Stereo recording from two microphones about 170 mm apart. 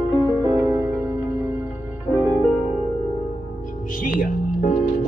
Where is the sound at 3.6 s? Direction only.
55° left (ahead or behind).